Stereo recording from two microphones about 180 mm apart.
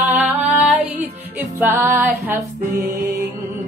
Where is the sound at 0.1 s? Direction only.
10° right (ahead or behind).